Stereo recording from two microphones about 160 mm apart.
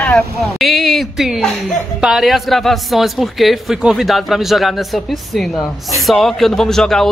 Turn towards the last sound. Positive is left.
turn(degrees=5)  # may be behind; listen again after turning